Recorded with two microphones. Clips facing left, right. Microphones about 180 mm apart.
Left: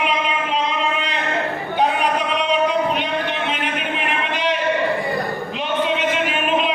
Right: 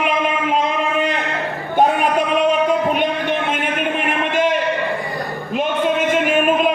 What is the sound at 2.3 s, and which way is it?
Music, 50° right (ahead or behind).